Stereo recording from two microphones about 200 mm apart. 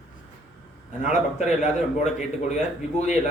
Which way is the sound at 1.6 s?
35° left (ahead or behind).